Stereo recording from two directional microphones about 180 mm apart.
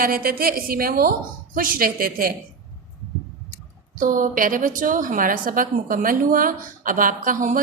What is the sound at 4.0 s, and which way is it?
A woman's voice, 50° right (ahead or behind).